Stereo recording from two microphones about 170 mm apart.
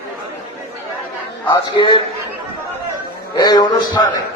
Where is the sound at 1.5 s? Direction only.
25° left (ahead or behind).